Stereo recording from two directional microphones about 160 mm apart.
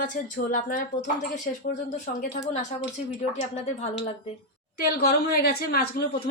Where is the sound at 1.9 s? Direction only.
50° left (ahead or behind).